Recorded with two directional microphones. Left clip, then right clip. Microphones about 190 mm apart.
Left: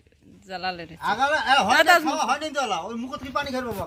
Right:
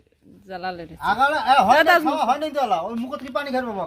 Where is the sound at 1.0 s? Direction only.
45° right (ahead or behind).